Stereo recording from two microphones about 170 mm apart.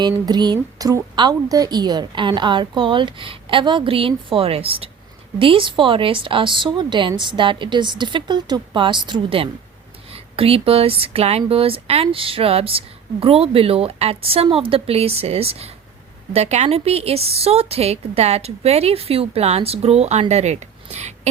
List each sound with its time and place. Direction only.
0.0 s a woman's voice: 25° right (ahead or behind); by 21.1 s 40° right (ahead or behind)